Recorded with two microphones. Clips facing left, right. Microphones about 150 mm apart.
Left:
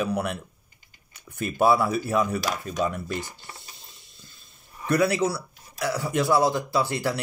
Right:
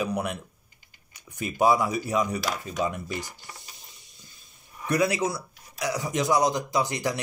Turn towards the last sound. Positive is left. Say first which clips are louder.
# left 1 dB
turn(degrees=-15)  # may be behind; listen again after turning